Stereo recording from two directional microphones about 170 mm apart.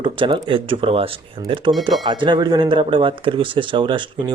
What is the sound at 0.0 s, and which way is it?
Speech, 30° right (ahead or behind).